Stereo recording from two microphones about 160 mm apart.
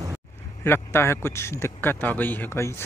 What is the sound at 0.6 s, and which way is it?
A man's voice, 15° left (ahead or behind).